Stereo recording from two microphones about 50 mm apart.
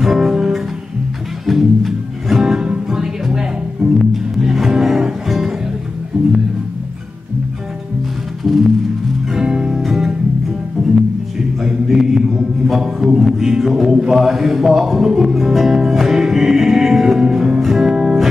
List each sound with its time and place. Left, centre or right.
0.0 s music: centre
6.1 s music: centre
8.5 s music: centre
9.3 s music: centre
11.6 s mantra: centre
13.0 s music: centre